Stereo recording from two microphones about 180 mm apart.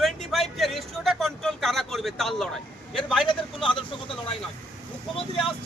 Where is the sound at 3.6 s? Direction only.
30° left (ahead or behind).